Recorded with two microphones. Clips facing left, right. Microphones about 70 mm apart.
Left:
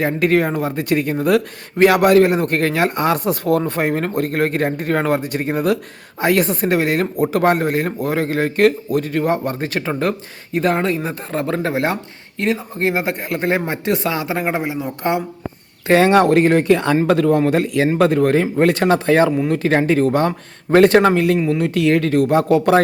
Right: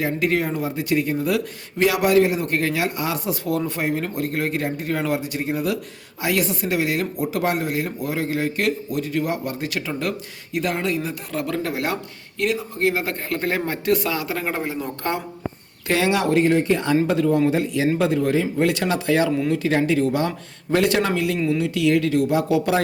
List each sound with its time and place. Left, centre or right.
0.0 s speech: left; by 15.2 s centre
15.9 s speech: left
21.3 s speech: left
21.6 s speech: left